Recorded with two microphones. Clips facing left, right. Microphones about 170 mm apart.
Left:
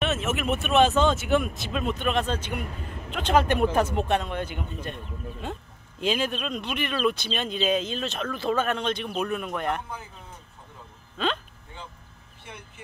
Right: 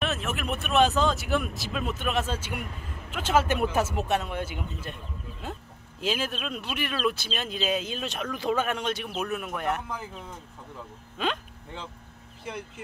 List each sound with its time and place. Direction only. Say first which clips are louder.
0.0 s speech: left 4 dB; centre (ahead or behind)
9.8 s speech: right 3 dB; 90° right
11.2 s speech: left 2 dB; 15° right (ahead or behind)